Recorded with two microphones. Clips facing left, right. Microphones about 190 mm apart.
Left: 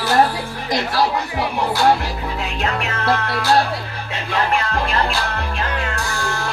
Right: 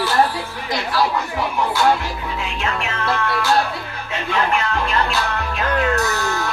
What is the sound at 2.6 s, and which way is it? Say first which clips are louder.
Music: left 2 dB; 40° left (ahead or behind).